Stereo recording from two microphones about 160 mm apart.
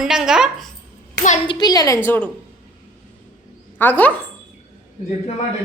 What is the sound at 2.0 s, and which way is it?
Speech, 10° left (ahead or behind).